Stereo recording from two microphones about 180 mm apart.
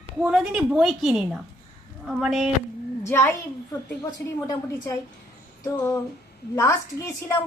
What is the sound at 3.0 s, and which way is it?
Speech, 15° left (ahead or behind).